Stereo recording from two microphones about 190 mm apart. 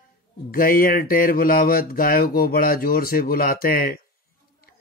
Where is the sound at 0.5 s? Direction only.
50° left (ahead or behind).